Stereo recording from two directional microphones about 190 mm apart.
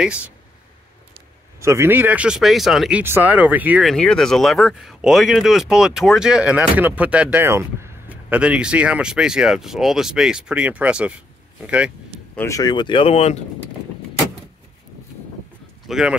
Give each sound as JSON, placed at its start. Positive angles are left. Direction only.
{"t": 0.0, "sound": "a man's voice", "side_deg": -5}
{"t": 1.6, "sound": "speech", "side_deg": -15}
{"t": 3.9, "sound": "a man's voice", "side_deg": 5}
{"t": 12.4, "sound": "speech", "side_deg": 15}
{"t": 15.9, "sound": "a man's voice", "side_deg": -5}